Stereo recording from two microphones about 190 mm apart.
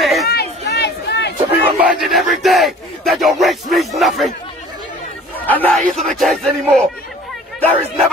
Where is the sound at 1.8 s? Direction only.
5° right (ahead or behind).